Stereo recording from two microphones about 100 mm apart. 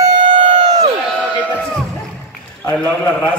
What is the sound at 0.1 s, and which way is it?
Crowd, 55° right (ahead or behind).